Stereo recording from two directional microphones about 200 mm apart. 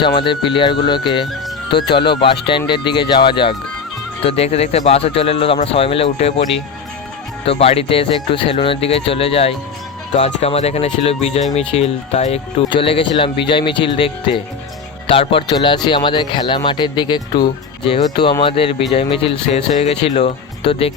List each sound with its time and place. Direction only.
0.2 s speech: 25° left (ahead or behind)
7.4 s speech: 30° left (ahead or behind)